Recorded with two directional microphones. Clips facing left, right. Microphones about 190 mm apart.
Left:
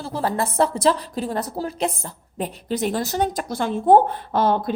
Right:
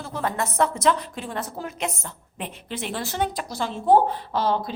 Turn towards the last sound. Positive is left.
turn(degrees=50)  # may be behind; listen again after turning